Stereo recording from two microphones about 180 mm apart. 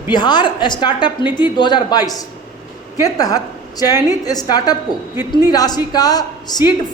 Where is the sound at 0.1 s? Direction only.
25° left (ahead or behind).